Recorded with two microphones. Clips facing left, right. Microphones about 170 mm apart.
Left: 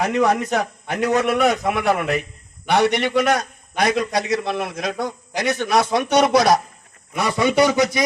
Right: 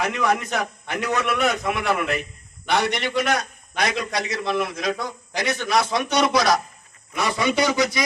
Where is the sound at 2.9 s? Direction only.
55° left (ahead or behind).